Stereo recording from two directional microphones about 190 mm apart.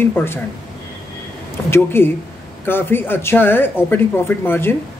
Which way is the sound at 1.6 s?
10° left (ahead or behind).